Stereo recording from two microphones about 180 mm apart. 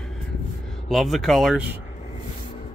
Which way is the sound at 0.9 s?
Centre (ahead or behind).